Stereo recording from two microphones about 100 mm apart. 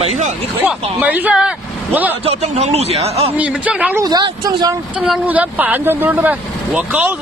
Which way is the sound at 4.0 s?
40° right (ahead or behind).